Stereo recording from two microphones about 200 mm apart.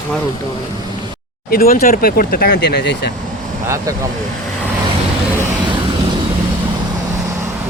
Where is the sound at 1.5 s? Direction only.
45° left (ahead or behind).